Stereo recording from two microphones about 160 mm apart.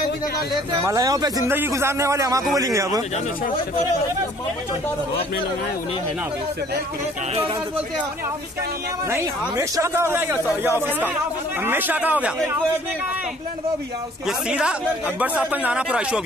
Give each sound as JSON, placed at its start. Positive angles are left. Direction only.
{"t": 0.8, "sound": "a man's voice", "side_deg": -20}
{"t": 9.1, "sound": "a man's voice", "side_deg": -20}
{"t": 14.2, "sound": "a man's voice", "side_deg": -5}